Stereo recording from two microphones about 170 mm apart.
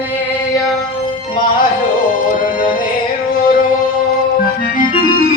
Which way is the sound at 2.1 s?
55° left (ahead or behind).